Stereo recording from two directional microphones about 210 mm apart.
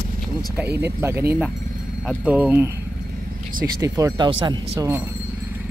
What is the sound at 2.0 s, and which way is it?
Speech, 5° right (ahead or behind).